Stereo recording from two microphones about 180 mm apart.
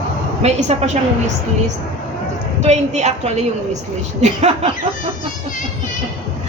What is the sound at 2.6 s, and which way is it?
A woman's voice, 40° right (ahead or behind).